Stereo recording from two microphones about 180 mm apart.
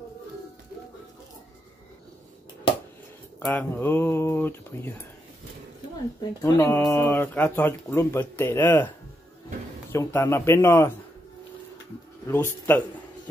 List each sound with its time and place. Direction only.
3.3 s speech: 10° left (ahead or behind)
6.4 s speech: 15° left (ahead or behind)
9.9 s speech: 15° left (ahead or behind)
12.3 s speech: 10° left (ahead or behind)